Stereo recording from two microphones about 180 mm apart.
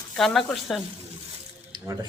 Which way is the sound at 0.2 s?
Centre (ahead or behind).